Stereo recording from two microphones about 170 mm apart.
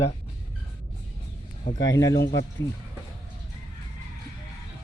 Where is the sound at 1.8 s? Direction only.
20° left (ahead or behind).